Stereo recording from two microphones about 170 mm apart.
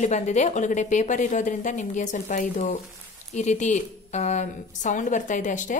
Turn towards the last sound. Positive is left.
turn(degrees=50)  # may be behind; listen again after turning